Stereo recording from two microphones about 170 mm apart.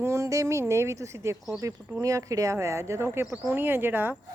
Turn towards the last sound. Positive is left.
turn(degrees=-10)  # may be behind; listen again after turning